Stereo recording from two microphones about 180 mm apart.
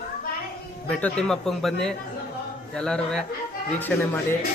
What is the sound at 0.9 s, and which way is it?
A man's voice, 5° left (ahead or behind).